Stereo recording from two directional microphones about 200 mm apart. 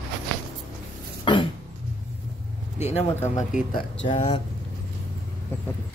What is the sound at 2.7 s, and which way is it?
Speech, 30° left (ahead or behind).